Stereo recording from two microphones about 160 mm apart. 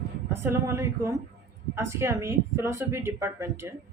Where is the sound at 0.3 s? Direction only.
15° right (ahead or behind).